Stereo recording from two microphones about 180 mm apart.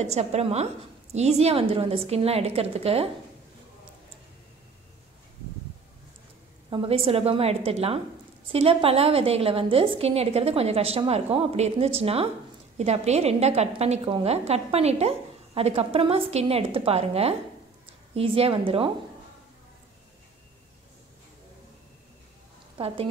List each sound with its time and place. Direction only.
0.0 s a woman's voice: 35° right (ahead or behind)
6.7 s a woman's voice: 30° right (ahead or behind)
22.8 s a woman's voice: 30° right (ahead or behind)